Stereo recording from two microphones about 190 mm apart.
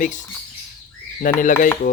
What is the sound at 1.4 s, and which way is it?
Speech, 45° left (ahead or behind).